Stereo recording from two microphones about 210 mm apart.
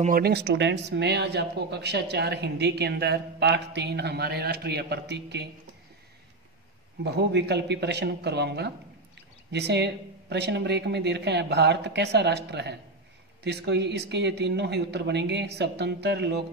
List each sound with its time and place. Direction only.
0.0 s speech: 45° right (ahead or behind)
7.1 s speech: 50° right (ahead or behind)